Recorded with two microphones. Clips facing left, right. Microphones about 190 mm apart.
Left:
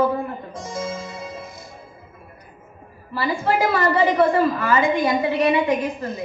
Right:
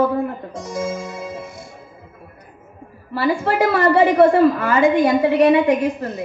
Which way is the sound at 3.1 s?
65° right (ahead or behind).